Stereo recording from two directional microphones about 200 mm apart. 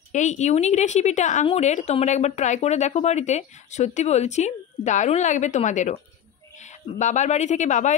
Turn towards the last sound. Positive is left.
turn(degrees=35)  # may be behind; listen again after turning